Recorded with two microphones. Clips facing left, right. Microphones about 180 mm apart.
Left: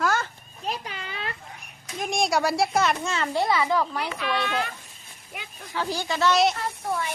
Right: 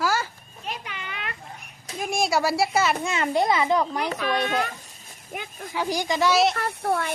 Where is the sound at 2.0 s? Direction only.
5° right (ahead or behind).